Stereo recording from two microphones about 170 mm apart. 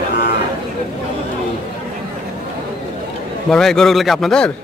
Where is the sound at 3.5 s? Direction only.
5° left (ahead or behind).